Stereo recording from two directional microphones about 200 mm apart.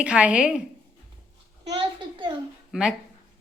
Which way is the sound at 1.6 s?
25° right (ahead or behind).